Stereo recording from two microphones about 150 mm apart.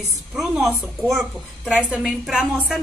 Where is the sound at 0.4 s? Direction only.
Centre (ahead or behind).